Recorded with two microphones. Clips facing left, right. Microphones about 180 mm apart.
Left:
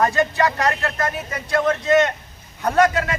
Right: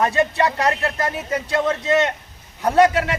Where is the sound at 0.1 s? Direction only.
30° right (ahead or behind).